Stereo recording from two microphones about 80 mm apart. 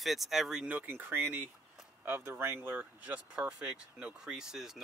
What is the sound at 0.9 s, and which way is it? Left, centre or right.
Speech, right.